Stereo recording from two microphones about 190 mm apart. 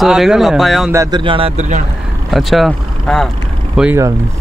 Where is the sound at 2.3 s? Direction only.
Centre (ahead or behind).